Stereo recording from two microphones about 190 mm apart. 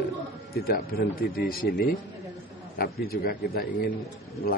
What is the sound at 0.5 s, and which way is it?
A man's voice, 50° left (ahead or behind).